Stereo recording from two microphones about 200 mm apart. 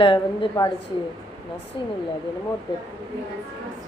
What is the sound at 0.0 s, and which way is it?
Speech, 20° left (ahead or behind).